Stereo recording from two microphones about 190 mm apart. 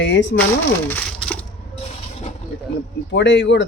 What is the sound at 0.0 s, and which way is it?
Speech, 70° left (ahead or behind).